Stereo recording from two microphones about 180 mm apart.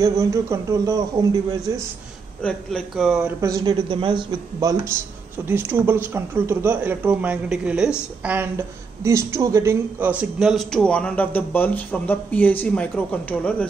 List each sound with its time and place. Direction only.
0.0 s speech: 15° right (ahead or behind)
2.4 s a man's voice: 5° left (ahead or behind)
3.3 s speech: 20° right (ahead or behind); by 13.7 s 5° left (ahead or behind)